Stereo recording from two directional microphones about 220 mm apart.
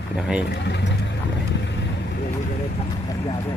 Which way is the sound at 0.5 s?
50° left (ahead or behind).